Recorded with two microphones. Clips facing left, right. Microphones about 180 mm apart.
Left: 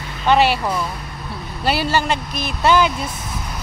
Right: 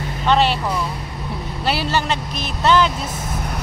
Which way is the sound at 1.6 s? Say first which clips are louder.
Left 2 dB; centre (ahead or behind).